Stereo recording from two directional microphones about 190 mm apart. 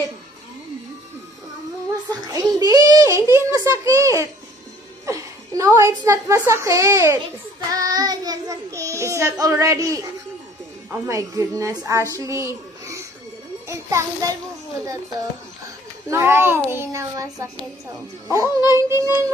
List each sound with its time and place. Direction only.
2.0 s child singing: 20° right (ahead or behind)
5.0 s a woman's voice: 15° right (ahead or behind)
7.7 s child singing: 20° right (ahead or behind)
10.9 s a woman's voice: 15° right (ahead or behind)
16.1 s a woman's voice: 10° right (ahead or behind)